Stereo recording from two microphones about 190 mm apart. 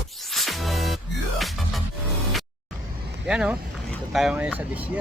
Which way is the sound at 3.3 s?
5° right (ahead or behind).